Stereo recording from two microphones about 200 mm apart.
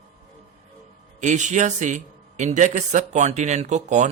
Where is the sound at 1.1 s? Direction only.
35° right (ahead or behind).